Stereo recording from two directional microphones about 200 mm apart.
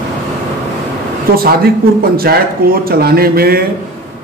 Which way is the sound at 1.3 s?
50° right (ahead or behind).